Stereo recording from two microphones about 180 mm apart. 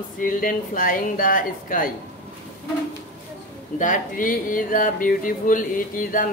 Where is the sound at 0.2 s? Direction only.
50° left (ahead or behind).